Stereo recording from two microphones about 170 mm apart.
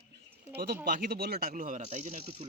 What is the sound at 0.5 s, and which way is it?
Speech, 65° right (ahead or behind).